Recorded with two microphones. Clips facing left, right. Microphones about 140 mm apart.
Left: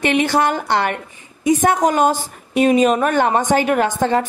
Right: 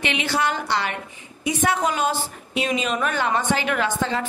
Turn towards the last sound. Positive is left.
turn(degrees=50)  # may be behind; listen again after turning